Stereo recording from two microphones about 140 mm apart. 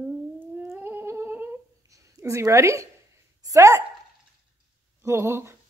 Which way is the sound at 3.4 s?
20° right (ahead or behind).